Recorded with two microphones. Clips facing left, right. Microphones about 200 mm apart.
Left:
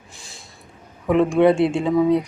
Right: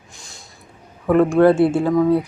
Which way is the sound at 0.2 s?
Centre (ahead or behind).